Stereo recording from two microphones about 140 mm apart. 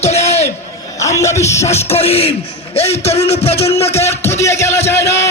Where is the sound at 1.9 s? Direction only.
45° left (ahead or behind).